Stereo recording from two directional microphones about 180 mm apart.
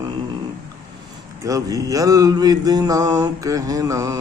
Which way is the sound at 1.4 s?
20° right (ahead or behind).